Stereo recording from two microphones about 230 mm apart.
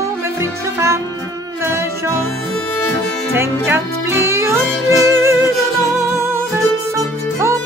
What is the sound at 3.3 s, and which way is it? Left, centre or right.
Music, centre.